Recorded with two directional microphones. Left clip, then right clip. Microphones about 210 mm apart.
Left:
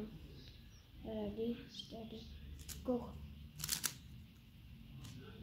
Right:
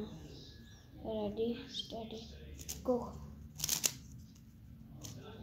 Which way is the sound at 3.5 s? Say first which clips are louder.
Right 6 dB; 5° left (ahead or behind).